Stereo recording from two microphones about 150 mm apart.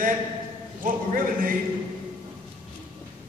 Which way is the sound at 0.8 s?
65° right (ahead or behind).